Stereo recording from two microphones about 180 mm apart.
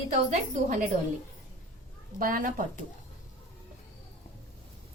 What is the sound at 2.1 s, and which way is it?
Speech, 50° right (ahead or behind).